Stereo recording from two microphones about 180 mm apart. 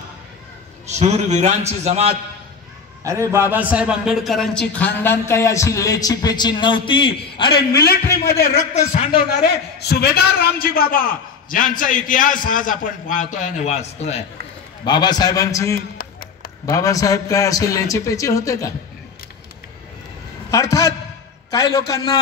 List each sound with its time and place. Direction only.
0.8 s a man's voice: 35° right (ahead or behind)
3.0 s a man's voice: 15° right (ahead or behind); by 7.6 s 30° left (ahead or behind)
7.7 s a man's voice: 60° left (ahead or behind)
8.3 s a man's voice: 45° left (ahead or behind)
9.4 s a man's voice: 65° left (ahead or behind); by 14.2 s 35° left (ahead or behind)
14.9 s a man's voice: 25° left (ahead or behind)
20.5 s a man's voice: 20° left (ahead or behind)